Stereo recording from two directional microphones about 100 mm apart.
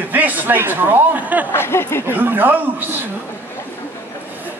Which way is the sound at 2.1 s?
20° right (ahead or behind).